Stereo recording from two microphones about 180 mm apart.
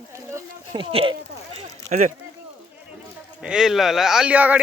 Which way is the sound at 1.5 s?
45° right (ahead or behind).